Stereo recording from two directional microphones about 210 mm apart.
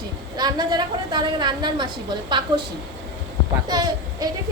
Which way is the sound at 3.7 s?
20° right (ahead or behind).